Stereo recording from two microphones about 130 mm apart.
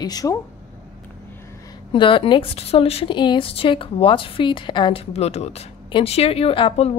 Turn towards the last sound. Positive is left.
turn(degrees=45)  # may be behind; listen again after turning